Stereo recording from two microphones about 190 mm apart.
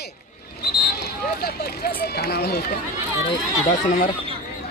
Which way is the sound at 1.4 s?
55° left (ahead or behind).